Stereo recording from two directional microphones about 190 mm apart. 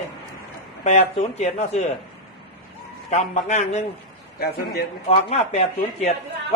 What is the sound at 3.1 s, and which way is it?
Speech, 35° left (ahead or behind).